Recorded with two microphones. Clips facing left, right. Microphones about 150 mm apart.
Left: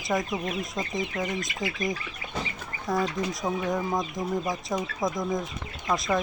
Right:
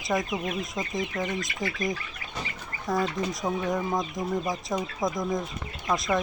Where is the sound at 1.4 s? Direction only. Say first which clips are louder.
Even; 20° left (ahead or behind).